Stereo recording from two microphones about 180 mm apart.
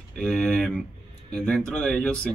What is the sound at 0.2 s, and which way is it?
Speech, 5° left (ahead or behind).